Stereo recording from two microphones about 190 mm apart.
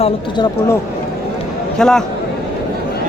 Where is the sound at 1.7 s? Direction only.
5° left (ahead or behind).